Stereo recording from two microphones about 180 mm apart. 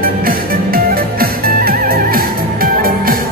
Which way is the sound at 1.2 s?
55° right (ahead or behind).